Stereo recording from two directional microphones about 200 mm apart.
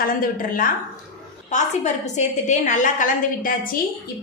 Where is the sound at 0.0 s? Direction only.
45° left (ahead or behind).